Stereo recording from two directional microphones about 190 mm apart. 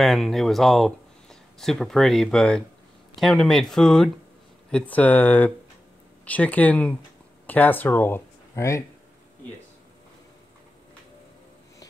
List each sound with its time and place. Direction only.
0.0 s speech: centre (ahead or behind)